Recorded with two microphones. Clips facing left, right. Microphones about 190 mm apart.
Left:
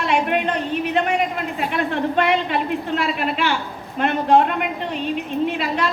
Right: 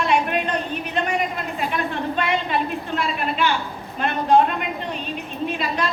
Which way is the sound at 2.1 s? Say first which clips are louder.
Left 3 dB; 75° left (ahead or behind).